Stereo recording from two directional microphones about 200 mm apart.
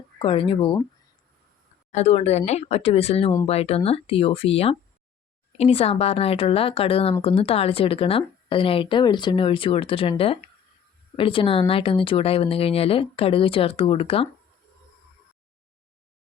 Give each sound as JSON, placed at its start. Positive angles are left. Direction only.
{"t": 0.2, "sound": "a woman's voice", "side_deg": 25}
{"t": 1.9, "sound": "a woman's voice", "side_deg": 35}